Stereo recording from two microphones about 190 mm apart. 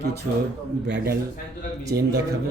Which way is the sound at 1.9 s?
55° right (ahead or behind).